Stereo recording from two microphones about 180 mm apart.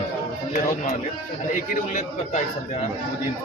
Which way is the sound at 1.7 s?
45° left (ahead or behind).